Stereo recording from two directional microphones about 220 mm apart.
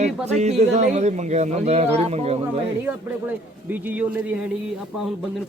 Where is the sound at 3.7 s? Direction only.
10° right (ahead or behind).